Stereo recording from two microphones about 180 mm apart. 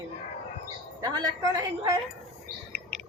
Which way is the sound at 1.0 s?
20° right (ahead or behind).